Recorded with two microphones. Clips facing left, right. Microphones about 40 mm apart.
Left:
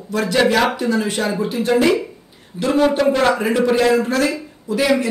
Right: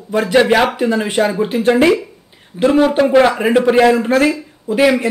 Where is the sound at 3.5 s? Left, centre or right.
Right.